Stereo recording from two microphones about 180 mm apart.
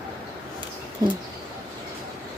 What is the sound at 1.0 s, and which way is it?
Speech, 20° right (ahead or behind).